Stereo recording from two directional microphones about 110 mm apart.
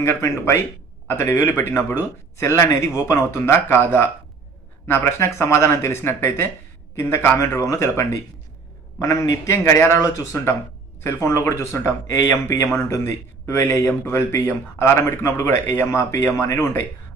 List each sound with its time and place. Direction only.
0.0 s speech: 25° left (ahead or behind)